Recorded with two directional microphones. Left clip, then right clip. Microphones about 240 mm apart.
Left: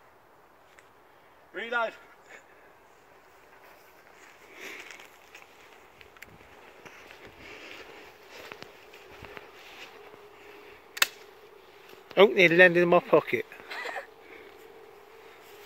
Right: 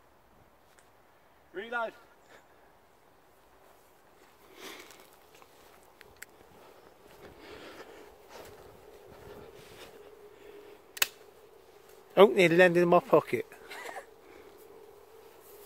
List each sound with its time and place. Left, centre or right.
1.5 s a man's voice: left
7.4 s a sound: right
12.1 s speech: centre